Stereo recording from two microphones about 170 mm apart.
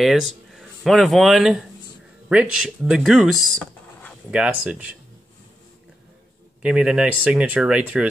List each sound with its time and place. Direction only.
0.0 s speech: centre (ahead or behind)
6.6 s speech: 5° right (ahead or behind)